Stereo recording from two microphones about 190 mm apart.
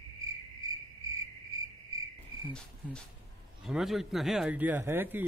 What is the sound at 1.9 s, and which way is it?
Insect, 20° right (ahead or behind).